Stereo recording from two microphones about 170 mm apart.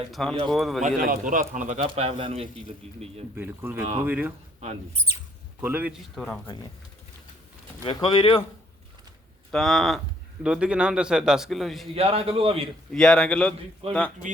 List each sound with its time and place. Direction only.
0.1 s a man's voice: centre (ahead or behind)
0.9 s speech: 55° right (ahead or behind)
1.8 s speech: 35° right (ahead or behind)
3.3 s speech: 15° right (ahead or behind)
5.5 s speech: 10° right (ahead or behind)
6.1 s a man's voice: 5° left (ahead or behind)
7.9 s speech: 30° left (ahead or behind)
9.5 s a man's voice: centre (ahead or behind)
11.9 s speech: 35° right (ahead or behind)
12.9 s a man's voice: 5° left (ahead or behind)
13.8 s speech: 35° right (ahead or behind)